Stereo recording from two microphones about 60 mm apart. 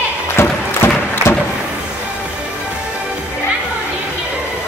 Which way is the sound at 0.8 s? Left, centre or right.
Left.